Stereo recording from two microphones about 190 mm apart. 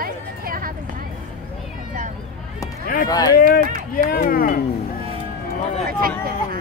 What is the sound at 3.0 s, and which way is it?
Speech, 20° left (ahead or behind).